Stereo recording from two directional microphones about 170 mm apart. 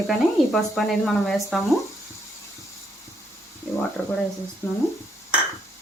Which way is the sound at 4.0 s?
10° left (ahead or behind).